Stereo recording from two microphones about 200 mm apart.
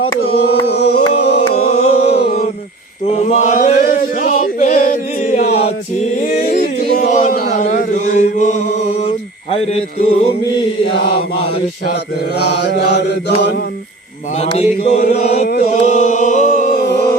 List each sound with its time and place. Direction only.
0.2 s chant: 50° left (ahead or behind)
1.4 s a sound: 30° left (ahead or behind)
2.0 s a sound: 55° left (ahead or behind)
3.1 s chant: 35° left (ahead or behind)
6.1 s a sound: 40° left (ahead or behind)
12.5 s mantra: 60° left (ahead or behind)
14.3 s chant: 35° left (ahead or behind)
15.4 s chant: 45° left (ahead or behind)
15.9 s a capella: 35° left (ahead or behind)